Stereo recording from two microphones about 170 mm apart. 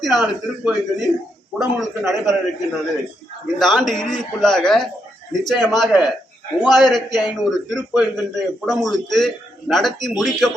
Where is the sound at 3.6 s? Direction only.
Centre (ahead or behind).